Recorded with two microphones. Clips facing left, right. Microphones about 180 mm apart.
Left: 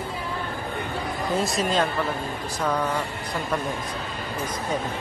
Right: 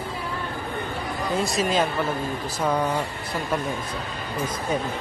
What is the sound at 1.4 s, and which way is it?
Speech, centre (ahead or behind).